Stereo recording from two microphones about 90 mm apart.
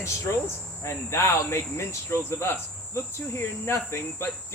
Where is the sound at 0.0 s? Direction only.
35° left (ahead or behind).